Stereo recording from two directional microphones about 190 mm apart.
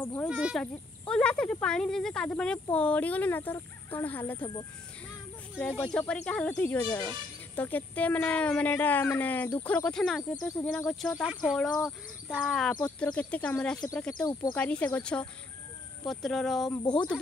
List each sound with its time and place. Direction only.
0.0 s speech: 5° left (ahead or behind)
0.3 s speech: 5° right (ahead or behind)
5.9 s speech: 5° left (ahead or behind)
10.4 s speech: 15° left (ahead or behind)
10.9 s speech: centre (ahead or behind)
14.2 s speech: 15° left (ahead or behind)
14.6 s speech: 5° left (ahead or behind)